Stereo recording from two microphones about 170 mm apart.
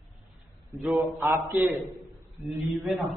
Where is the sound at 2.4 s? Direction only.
Centre (ahead or behind).